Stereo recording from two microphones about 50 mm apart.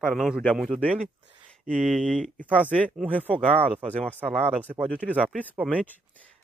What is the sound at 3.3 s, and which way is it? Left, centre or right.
Speech, left.